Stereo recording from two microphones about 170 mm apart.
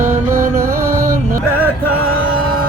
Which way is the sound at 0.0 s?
50° right (ahead or behind).